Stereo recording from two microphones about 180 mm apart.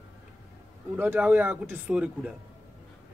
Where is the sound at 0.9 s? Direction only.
10° right (ahead or behind).